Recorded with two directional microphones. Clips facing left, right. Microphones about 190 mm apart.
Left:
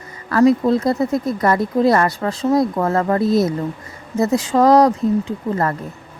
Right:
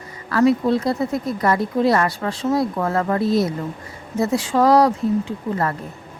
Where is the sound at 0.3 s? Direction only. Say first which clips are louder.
Left 3 dB; 40° left (ahead or behind).